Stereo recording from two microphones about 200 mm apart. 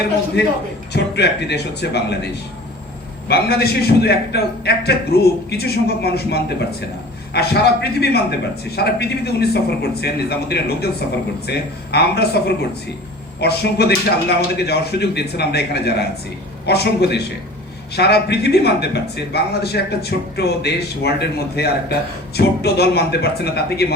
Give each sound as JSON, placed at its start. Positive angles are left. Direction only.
{"t": 0.9, "sound": "a man's voice", "side_deg": 55}